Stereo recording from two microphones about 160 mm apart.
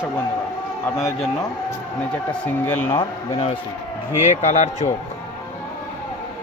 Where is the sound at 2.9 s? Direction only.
35° left (ahead or behind).